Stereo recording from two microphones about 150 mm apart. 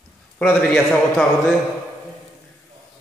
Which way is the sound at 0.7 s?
5° left (ahead or behind).